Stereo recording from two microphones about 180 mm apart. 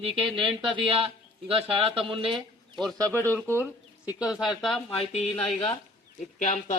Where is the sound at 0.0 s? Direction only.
30° right (ahead or behind).